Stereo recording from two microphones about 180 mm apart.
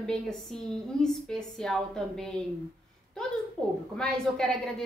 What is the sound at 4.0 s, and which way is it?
Speech, 5° left (ahead or behind).